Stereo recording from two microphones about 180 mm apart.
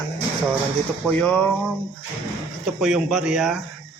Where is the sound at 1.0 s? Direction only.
5° left (ahead or behind).